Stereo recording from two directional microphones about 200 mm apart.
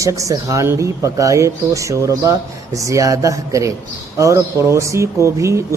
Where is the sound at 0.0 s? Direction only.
15° right (ahead or behind).